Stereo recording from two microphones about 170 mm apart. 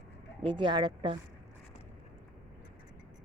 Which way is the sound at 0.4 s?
30° right (ahead or behind).